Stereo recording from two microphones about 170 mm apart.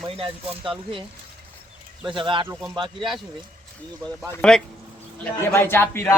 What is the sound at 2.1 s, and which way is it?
Speech, 30° right (ahead or behind).